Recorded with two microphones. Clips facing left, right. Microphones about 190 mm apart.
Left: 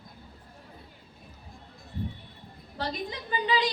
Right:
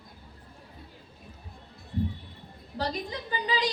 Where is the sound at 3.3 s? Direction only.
40° right (ahead or behind).